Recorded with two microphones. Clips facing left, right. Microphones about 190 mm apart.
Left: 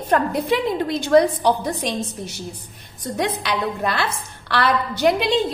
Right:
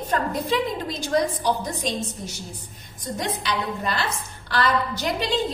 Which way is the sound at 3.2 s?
65° left (ahead or behind).